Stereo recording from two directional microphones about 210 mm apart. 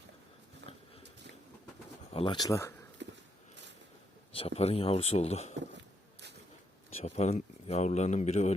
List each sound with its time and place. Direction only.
2.0 s speech: 25° left (ahead or behind)
3.0 s a sound: 60° right (ahead or behind)
4.3 s speech: 25° left (ahead or behind)
7.0 s speech: 30° left (ahead or behind)